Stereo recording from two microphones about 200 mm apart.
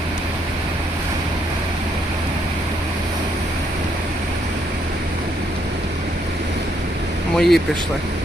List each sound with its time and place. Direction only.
7.3 s speech: centre (ahead or behind)